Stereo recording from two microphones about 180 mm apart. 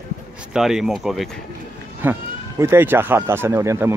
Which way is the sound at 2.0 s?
15° right (ahead or behind).